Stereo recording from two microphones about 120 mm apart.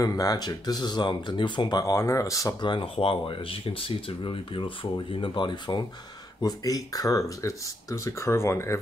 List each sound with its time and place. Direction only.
0.0 s speech: 30° left (ahead or behind)
2.6 s speech: 40° left (ahead or behind); by 8.7 s 25° left (ahead or behind)